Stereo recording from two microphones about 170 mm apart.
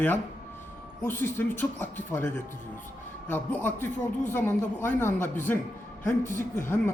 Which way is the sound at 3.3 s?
10° left (ahead or behind).